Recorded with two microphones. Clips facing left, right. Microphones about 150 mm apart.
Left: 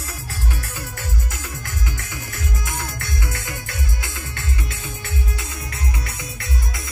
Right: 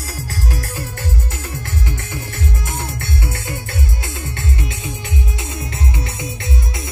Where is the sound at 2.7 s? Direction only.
25° right (ahead or behind).